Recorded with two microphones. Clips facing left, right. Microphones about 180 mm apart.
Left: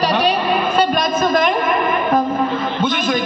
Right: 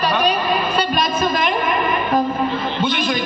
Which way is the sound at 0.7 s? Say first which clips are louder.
Left 3 dB; 50° left (ahead or behind).